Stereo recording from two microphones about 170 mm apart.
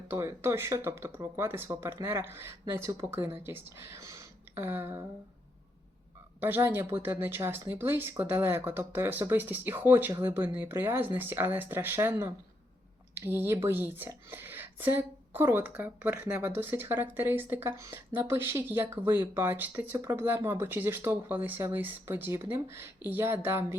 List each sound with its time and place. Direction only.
0.1 s speech: 15° right (ahead or behind)
6.4 s speech: 10° right (ahead or behind)